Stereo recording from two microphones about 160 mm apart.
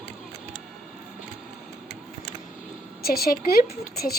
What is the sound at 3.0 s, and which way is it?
A child's voice, 70° left (ahead or behind).